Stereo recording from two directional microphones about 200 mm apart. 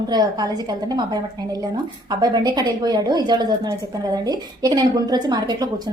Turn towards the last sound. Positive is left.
turn(degrees=-20)  # may be behind; listen again after turning